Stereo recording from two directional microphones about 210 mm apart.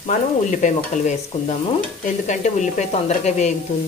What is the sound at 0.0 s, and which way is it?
Sizzle, 35° left (ahead or behind).